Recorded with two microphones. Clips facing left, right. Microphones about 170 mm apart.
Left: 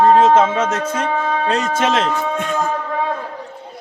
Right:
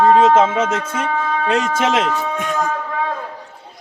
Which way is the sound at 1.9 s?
10° right (ahead or behind).